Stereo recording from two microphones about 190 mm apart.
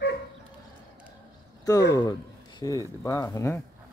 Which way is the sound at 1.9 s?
20° left (ahead or behind).